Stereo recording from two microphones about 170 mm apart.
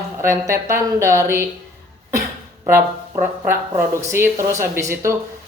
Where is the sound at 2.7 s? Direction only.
15° right (ahead or behind).